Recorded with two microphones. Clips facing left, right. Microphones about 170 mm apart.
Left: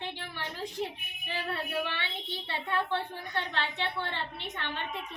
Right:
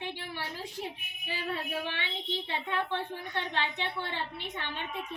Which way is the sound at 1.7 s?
15° right (ahead or behind).